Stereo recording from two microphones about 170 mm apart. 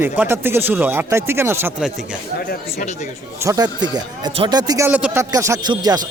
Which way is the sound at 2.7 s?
40° left (ahead or behind).